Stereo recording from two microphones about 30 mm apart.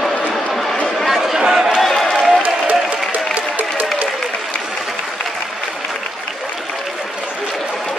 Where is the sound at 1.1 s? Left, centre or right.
Centre.